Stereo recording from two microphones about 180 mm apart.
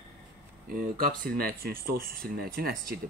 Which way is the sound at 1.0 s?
55° right (ahead or behind).